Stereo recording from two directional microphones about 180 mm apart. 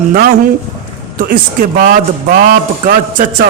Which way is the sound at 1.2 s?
50° right (ahead or behind).